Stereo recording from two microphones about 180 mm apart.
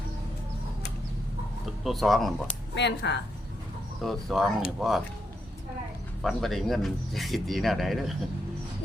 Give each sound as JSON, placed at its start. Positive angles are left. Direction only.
{"t": 1.8, "sound": "speech", "side_deg": 0}
{"t": 2.7, "sound": "speech", "side_deg": 75}
{"t": 4.0, "sound": "speech", "side_deg": 0}
{"t": 6.2, "sound": "speech", "side_deg": 0}